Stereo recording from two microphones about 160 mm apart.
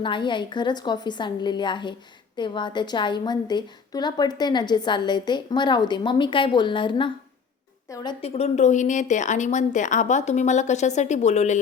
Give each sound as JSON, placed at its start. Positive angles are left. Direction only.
{"t": 0.0, "sound": "a woman's voice", "side_deg": 30}
{"t": 8.2, "sound": "a woman's voice", "side_deg": 40}